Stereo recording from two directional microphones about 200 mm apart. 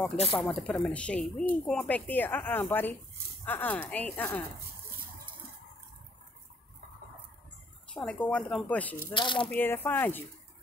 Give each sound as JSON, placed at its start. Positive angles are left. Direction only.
{"t": 0.4, "sound": "speech", "side_deg": 5}
{"t": 7.9, "sound": "speech", "side_deg": 5}
{"t": 9.1, "sound": "speech", "side_deg": 25}
{"t": 9.5, "sound": "speech", "side_deg": 10}